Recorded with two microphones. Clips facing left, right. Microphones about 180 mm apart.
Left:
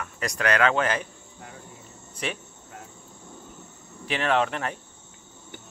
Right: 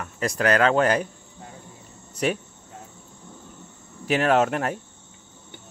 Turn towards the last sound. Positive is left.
turn(degrees=-45)  # may be behind; listen again after turning